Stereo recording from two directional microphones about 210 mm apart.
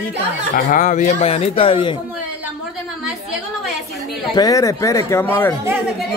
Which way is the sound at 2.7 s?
5° right (ahead or behind).